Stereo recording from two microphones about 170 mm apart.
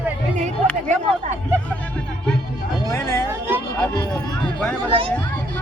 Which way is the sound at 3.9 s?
25° left (ahead or behind).